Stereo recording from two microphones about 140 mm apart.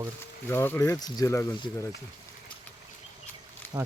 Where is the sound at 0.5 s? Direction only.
15° left (ahead or behind).